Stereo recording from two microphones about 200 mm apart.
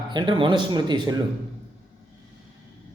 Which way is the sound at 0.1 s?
25° right (ahead or behind).